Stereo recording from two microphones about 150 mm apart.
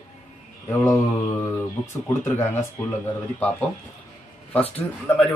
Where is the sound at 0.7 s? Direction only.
15° left (ahead or behind).